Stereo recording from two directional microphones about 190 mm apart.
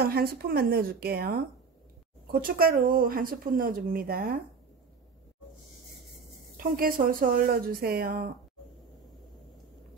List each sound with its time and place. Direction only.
0.0 s speech: 55° right (ahead or behind)
2.4 s speech: 50° right (ahead or behind)
6.5 s speech: 50° right (ahead or behind)